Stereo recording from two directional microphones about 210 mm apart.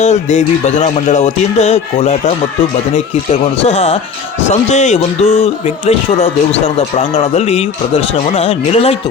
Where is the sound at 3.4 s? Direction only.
30° left (ahead or behind).